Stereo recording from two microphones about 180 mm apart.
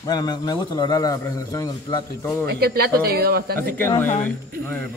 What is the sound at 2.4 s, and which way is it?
Speech, 60° right (ahead or behind).